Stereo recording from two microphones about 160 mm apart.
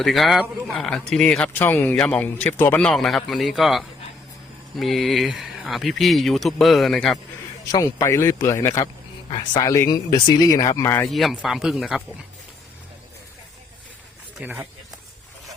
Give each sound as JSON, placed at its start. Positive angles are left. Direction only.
{"t": 0.0, "sound": "speech", "side_deg": 0}
{"t": 7.6, "sound": "speech", "side_deg": 20}
{"t": 11.1, "sound": "speech", "side_deg": 0}
{"t": 14.4, "sound": "speech", "side_deg": -10}